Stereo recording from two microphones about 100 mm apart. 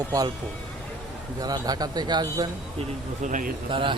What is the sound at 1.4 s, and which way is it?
Speech, 40° right (ahead or behind).